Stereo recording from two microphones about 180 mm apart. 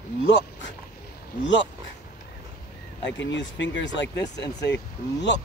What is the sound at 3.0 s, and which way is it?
Speech, 85° left.